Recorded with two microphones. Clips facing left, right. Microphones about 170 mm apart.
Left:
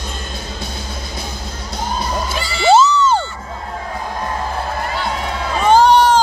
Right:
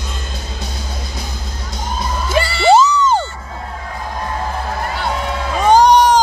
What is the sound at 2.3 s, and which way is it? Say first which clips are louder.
Music: right 7 dB; 65° right (ahead or behind).